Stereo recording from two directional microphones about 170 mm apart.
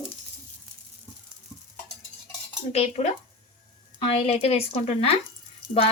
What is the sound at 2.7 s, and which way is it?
Speech, 40° left (ahead or behind).